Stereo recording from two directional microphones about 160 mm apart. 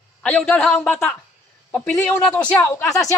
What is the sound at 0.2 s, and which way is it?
Speech, 10° left (ahead or behind).